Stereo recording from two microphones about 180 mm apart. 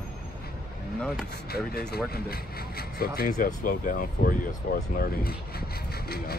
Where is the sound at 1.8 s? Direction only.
60° left (ahead or behind).